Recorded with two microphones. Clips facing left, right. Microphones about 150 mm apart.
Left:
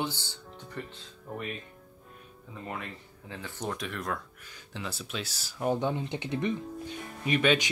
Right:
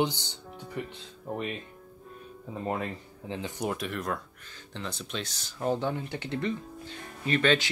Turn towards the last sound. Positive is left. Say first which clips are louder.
# even
turn(degrees=10)  # may be behind; listen again after turning